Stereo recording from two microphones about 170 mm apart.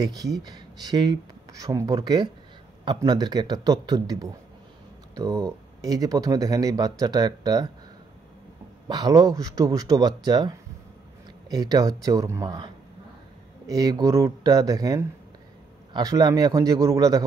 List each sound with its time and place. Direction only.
0.0 s speech: 20° right (ahead or behind)
8.8 s speech: 25° right (ahead or behind)
13.7 s speech: 20° right (ahead or behind)